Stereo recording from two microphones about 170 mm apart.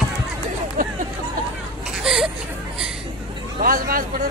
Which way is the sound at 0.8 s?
55° right (ahead or behind).